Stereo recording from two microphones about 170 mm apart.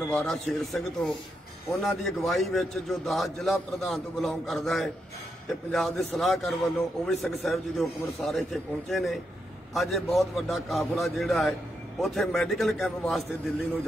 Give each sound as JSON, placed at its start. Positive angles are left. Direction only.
{"t": 0.1, "sound": "a man's voice", "side_deg": 5}